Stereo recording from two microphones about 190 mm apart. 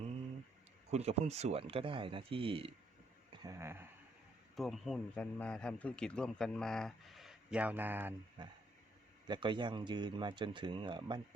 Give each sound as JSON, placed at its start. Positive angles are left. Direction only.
{"t": 0.9, "sound": "speech", "side_deg": -35}
{"t": 3.4, "sound": "speech", "side_deg": -15}
{"t": 4.5, "sound": "speech", "side_deg": 0}
{"t": 8.4, "sound": "speech", "side_deg": -25}